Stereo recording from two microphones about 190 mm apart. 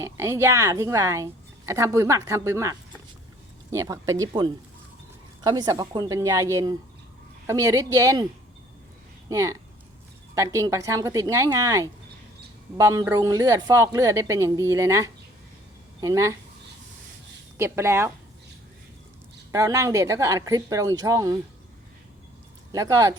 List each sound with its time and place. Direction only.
0.0 s a woman's voice: 15° right (ahead or behind)
9.3 s a woman's voice: 15° right (ahead or behind)
17.6 s a woman's voice: 15° right (ahead or behind)
19.5 s a woman's voice: 20° right (ahead or behind)
22.7 s a woman's voice: 20° right (ahead or behind)